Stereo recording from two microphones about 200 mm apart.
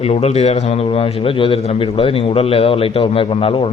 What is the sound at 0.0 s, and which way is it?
A man's voice, 30° left (ahead or behind).